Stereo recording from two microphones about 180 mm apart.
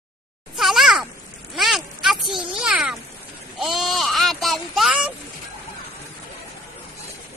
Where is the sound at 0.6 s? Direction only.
Centre (ahead or behind).